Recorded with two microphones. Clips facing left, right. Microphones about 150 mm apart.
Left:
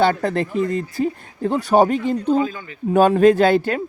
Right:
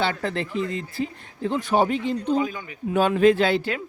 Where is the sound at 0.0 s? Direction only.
45° left (ahead or behind).